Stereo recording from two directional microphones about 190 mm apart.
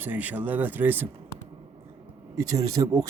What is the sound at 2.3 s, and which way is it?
Speech, 15° right (ahead or behind).